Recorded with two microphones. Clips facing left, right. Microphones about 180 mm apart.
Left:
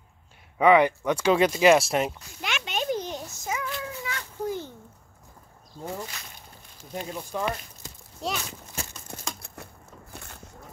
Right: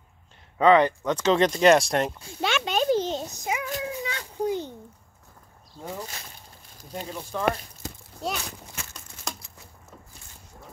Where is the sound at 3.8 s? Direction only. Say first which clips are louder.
Right 3 dB; 20° right (ahead or behind).